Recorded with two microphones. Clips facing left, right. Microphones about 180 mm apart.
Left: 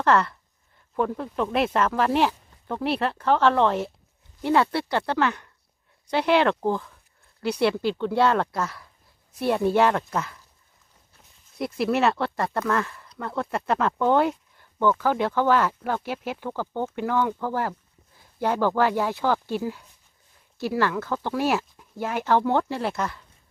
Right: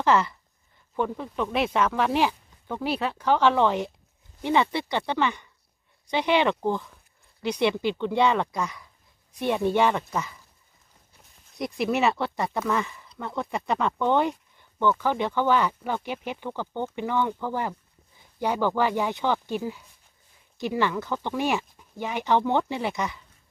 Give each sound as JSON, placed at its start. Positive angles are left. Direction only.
{"t": 0.0, "sound": "speech", "side_deg": 0}
{"t": 11.5, "sound": "speech", "side_deg": 5}